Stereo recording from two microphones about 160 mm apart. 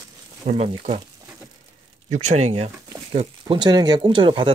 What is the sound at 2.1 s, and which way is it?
Speech, 45° right (ahead or behind).